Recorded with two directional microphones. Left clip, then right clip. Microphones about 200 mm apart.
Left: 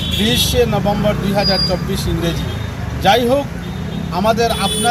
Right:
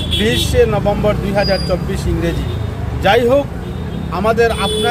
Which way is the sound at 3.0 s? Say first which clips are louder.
Right 1 dB; 5° right (ahead or behind).